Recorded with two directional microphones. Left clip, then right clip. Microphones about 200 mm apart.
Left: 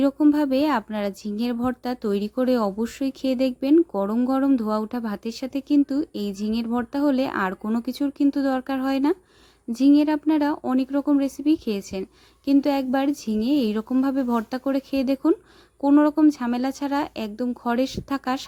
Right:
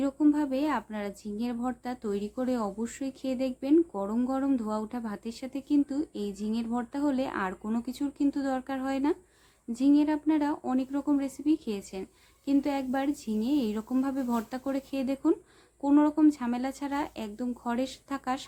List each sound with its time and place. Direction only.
0.0 s speech: 35° left (ahead or behind)